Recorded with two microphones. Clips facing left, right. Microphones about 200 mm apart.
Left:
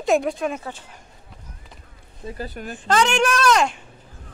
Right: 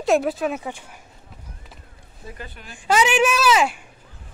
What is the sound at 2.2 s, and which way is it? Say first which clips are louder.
Speech: left 7 dB; 35° left (ahead or behind).